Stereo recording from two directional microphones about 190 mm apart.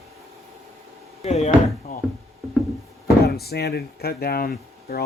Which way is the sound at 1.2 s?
35° left (ahead or behind).